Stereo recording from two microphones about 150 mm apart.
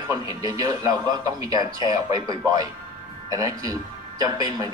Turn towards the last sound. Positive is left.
turn(degrees=-25)  # may be behind; listen again after turning